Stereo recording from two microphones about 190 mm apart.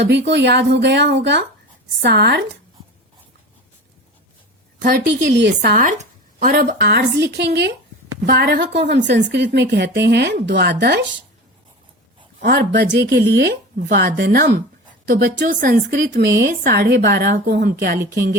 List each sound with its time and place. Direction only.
0.0 s speech: 65° right (ahead or behind)
5.3 s speech: 65° right (ahead or behind)
5.7 s speech: 45° right (ahead or behind)
6.7 s speech: 65° right (ahead or behind)
12.4 s speech: 60° right (ahead or behind)